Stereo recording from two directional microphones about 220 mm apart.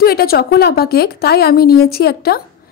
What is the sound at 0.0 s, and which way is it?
A woman's voice, 45° left (ahead or behind).